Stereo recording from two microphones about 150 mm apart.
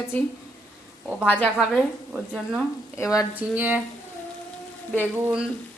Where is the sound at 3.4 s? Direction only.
10° right (ahead or behind).